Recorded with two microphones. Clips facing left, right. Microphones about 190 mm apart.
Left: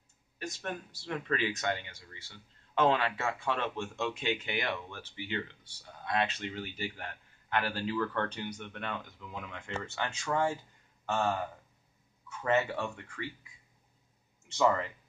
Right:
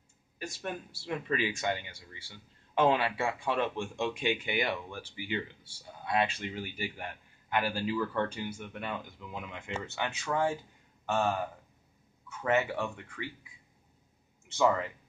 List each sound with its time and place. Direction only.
0.4 s speech: 10° right (ahead or behind)
12.4 s speech: 15° right (ahead or behind)
14.6 s speech: 10° right (ahead or behind)